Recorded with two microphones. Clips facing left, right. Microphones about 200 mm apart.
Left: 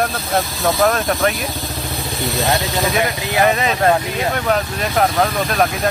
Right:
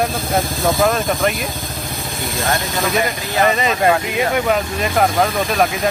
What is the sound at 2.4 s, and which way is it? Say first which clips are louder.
Speech: left 1 dB; 50° right (ahead or behind).